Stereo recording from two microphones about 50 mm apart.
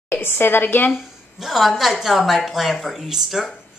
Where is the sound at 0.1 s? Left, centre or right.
Left.